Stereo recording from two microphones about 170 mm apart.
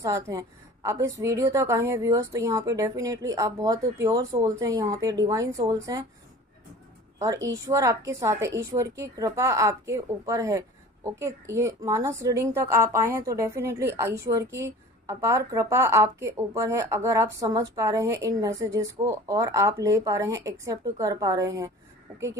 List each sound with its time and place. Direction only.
0.0 s a woman's voice: 20° right (ahead or behind)
7.4 s a woman's voice: 20° right (ahead or behind)